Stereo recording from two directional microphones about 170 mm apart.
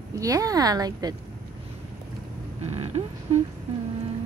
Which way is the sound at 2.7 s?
35° right (ahead or behind).